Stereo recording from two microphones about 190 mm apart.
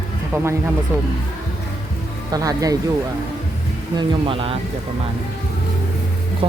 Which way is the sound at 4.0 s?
30° right (ahead or behind).